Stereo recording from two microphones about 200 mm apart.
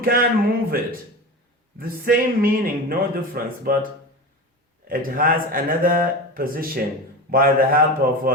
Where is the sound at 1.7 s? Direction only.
45° right (ahead or behind).